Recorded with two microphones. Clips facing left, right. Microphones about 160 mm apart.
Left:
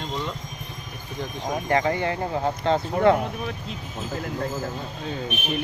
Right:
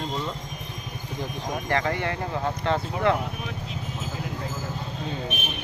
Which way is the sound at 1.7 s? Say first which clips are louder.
Left 3 dB; 20° left (ahead or behind).